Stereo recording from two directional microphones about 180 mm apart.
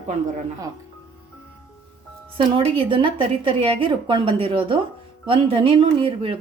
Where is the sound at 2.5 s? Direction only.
30° right (ahead or behind).